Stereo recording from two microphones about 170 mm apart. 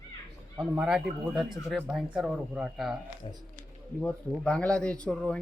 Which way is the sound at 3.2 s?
30° left (ahead or behind).